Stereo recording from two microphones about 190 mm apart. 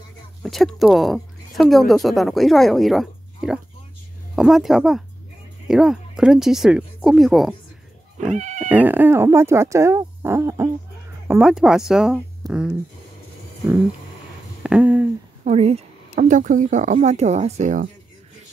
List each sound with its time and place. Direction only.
0.4 s speech: centre (ahead or behind)
8.3 s cat: 40° right (ahead or behind)
8.6 s speech: 10° right (ahead or behind)
11.2 s speech: 5° right (ahead or behind)
14.6 s a sound: 5° right (ahead or behind)
15.4 s speech: 35° right (ahead or behind)